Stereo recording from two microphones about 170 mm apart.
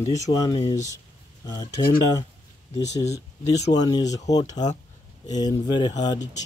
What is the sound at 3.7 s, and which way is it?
Speech, 25° left (ahead or behind).